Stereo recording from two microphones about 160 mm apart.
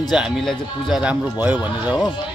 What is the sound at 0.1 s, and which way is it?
Speech, centre (ahead or behind).